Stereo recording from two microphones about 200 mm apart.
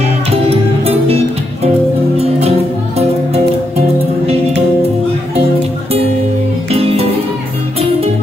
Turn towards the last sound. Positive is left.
turn(degrees=-30)  # may be behind; listen again after turning